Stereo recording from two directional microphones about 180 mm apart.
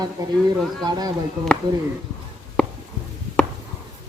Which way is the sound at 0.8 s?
20° right (ahead or behind).